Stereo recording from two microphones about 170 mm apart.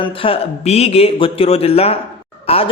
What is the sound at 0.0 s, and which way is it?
A man's voice, 30° left (ahead or behind).